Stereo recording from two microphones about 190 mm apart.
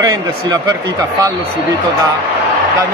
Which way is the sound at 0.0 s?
20° right (ahead or behind).